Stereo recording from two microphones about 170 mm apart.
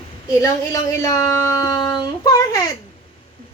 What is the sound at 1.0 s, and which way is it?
Speech, 20° left (ahead or behind).